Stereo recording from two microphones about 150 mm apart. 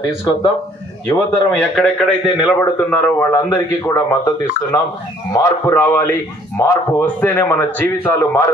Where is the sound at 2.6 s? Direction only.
10° left (ahead or behind).